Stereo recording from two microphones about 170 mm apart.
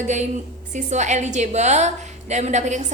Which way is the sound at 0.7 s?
45° right (ahead or behind).